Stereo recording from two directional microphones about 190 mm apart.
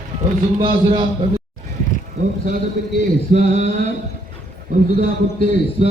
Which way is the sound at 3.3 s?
35° right (ahead or behind).